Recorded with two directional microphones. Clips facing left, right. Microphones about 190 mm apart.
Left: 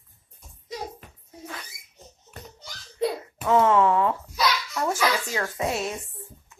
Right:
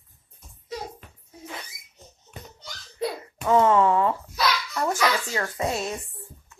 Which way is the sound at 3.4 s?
Centre (ahead or behind).